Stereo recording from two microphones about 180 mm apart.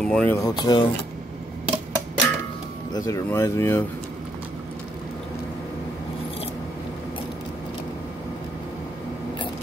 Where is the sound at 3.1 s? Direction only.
15° left (ahead or behind).